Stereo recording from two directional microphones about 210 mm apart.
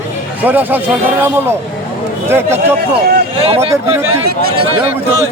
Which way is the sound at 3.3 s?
25° right (ahead or behind).